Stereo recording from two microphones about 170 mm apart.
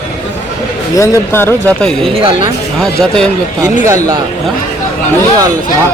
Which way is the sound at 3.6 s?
20° right (ahead or behind).